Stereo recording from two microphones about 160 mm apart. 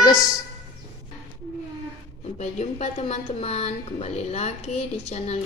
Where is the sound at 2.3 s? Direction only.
45° left (ahead or behind).